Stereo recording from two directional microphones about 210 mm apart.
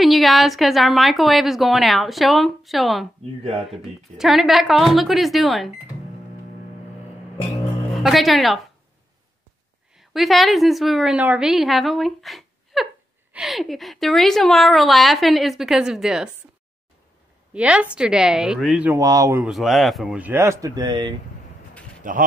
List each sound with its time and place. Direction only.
0.0 s speech: centre (ahead or behind)
7.9 s speech: centre (ahead or behind)
9.9 s a woman's voice: centre (ahead or behind)
17.6 s speech: 5° right (ahead or behind)
22.0 s speech: 40° right (ahead or behind)